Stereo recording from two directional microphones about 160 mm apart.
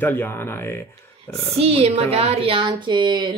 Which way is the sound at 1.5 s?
40° right (ahead or behind).